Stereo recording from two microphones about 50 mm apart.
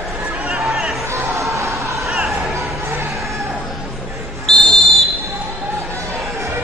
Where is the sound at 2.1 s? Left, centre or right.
Centre.